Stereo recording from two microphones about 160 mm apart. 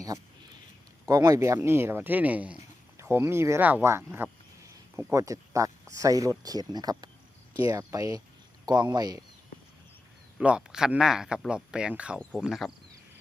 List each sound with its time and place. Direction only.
1.0 s speech: 20° right (ahead or behind)
10.3 s speech: 5° right (ahead or behind)
12.2 s speech: 5° left (ahead or behind)